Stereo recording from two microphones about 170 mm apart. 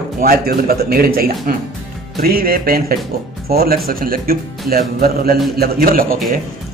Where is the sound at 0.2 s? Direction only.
60° right (ahead or behind).